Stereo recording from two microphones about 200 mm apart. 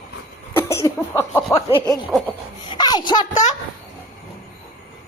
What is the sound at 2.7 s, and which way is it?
Speech, 20° left (ahead or behind).